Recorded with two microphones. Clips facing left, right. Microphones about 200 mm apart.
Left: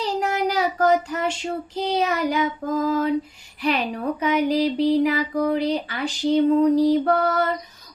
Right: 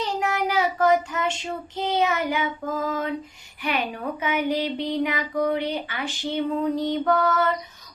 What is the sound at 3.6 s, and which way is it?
Speech, 35° left (ahead or behind).